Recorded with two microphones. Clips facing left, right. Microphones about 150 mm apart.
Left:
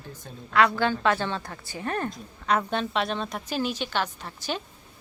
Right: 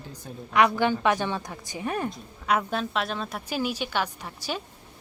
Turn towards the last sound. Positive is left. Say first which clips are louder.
# left 1 dB
turn(degrees=-10)  # may be behind; listen again after turning